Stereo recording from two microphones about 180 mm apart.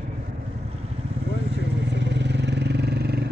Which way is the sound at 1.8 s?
75° right (ahead or behind).